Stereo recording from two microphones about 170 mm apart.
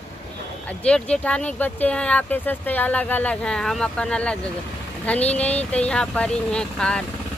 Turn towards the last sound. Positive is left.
turn(degrees=5)  # may be behind; listen again after turning